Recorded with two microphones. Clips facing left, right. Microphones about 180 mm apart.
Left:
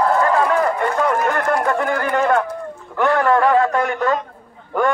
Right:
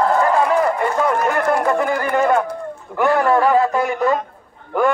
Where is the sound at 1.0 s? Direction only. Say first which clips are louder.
Right 1 dB; 5° right (ahead or behind).